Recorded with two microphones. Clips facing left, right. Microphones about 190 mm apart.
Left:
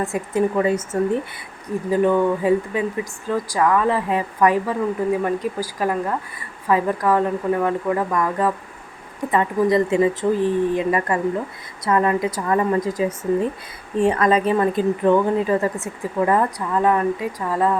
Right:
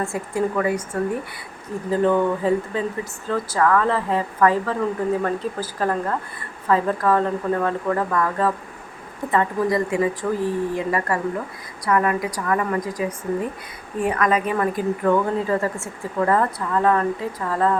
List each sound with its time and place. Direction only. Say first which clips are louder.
0.0 s speech: left 3 dB; 20° left (ahead or behind)